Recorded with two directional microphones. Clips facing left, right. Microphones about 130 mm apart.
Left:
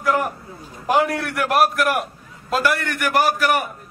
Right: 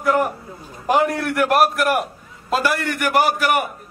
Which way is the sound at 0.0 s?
Centre (ahead or behind).